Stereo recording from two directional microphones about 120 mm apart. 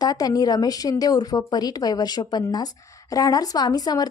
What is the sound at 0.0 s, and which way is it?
A woman's voice, 30° left (ahead or behind).